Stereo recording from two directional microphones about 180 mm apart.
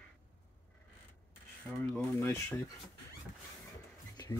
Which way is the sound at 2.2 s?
15° left (ahead or behind).